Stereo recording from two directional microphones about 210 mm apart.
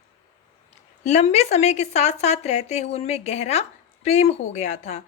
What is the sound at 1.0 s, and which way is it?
A woman's voice, 30° left (ahead or behind).